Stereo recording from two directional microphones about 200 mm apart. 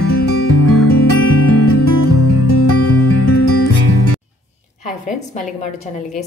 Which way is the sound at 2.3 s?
90° left.